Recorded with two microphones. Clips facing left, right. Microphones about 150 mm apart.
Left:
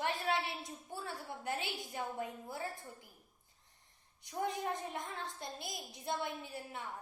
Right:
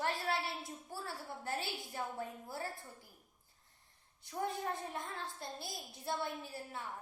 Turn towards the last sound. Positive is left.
turn(degrees=20)  # may be behind; listen again after turning